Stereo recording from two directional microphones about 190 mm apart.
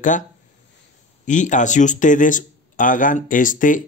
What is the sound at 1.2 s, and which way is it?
Speech, 40° left (ahead or behind).